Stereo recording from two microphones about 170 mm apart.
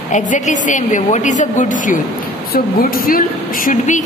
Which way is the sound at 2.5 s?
60° left (ahead or behind).